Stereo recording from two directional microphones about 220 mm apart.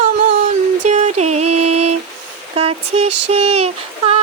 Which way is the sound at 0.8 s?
30° right (ahead or behind).